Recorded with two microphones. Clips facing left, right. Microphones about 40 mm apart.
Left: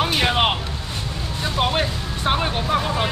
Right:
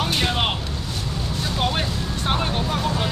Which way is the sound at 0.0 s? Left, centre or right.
Centre.